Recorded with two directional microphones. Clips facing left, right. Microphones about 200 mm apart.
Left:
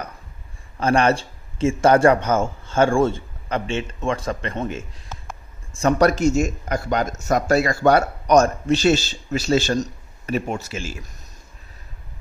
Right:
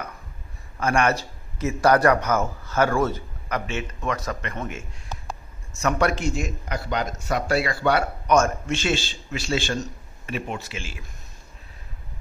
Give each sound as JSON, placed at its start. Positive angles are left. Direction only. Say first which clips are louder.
{"t": 0.7, "sound": "a man's voice", "louder": "left 4 dB", "side_deg": 30}